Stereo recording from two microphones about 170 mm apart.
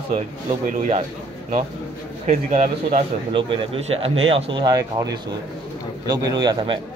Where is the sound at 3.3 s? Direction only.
30° right (ahead or behind).